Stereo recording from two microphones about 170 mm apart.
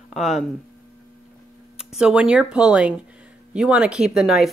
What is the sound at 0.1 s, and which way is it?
Speech, centre (ahead or behind).